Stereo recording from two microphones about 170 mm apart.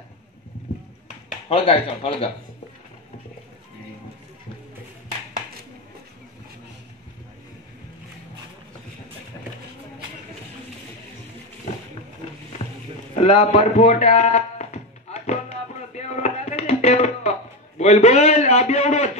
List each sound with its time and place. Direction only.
1.5 s speech: 35° left (ahead or behind)
13.2 s speech: 40° left (ahead or behind)
15.9 s music: 40° left (ahead or behind)